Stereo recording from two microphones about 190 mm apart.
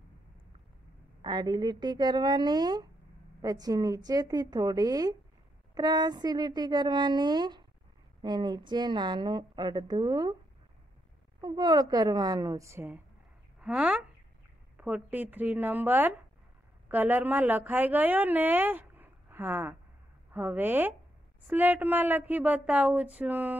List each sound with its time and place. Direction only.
1.2 s a woman's voice: 20° right (ahead or behind)
11.4 s a woman's voice: 20° right (ahead or behind)